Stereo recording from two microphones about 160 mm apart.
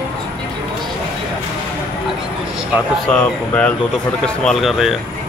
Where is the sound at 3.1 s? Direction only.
5° left (ahead or behind).